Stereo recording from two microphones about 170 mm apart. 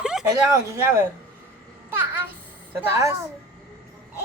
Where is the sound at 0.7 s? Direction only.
15° right (ahead or behind).